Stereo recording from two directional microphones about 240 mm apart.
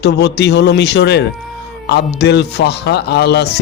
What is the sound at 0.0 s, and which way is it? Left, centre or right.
Speech, left.